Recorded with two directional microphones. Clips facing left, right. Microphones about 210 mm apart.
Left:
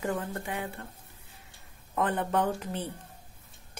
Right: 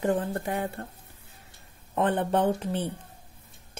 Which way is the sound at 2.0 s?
30° right (ahead or behind).